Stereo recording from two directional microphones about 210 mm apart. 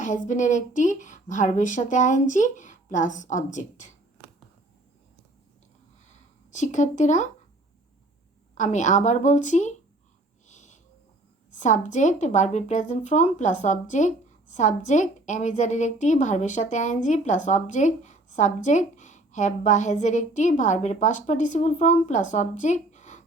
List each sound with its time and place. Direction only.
0.0 s speech: 35° left (ahead or behind)
4.2 s a sound: 10° right (ahead or behind)
6.1 s a sound: 35° left (ahead or behind)
8.5 s speech: 35° left (ahead or behind)
10.5 s wheeze: 35° left (ahead or behind)
11.5 s speech: 35° left (ahead or behind)